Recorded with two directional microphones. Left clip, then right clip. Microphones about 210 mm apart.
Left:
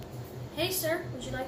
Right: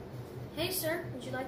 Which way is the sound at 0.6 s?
5° left (ahead or behind).